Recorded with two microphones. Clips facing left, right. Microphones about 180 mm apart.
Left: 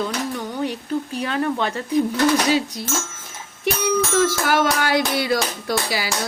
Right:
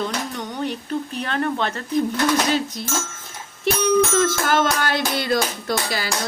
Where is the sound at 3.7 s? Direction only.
15° left (ahead or behind).